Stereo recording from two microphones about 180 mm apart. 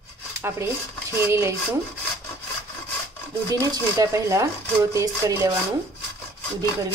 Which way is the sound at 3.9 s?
15° right (ahead or behind).